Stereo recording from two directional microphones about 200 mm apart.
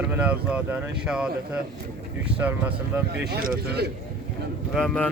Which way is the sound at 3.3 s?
55° right (ahead or behind).